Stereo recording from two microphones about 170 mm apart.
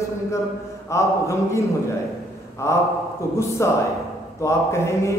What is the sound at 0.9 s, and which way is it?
A man's voice, 15° left (ahead or behind).